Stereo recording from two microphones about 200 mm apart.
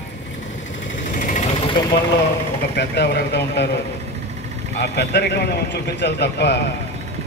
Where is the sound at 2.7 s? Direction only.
55° left (ahead or behind).